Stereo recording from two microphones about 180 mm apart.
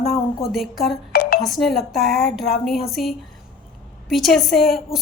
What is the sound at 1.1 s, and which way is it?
Music, 55° left (ahead or behind).